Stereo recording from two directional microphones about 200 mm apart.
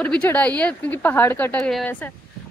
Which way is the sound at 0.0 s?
10° left (ahead or behind).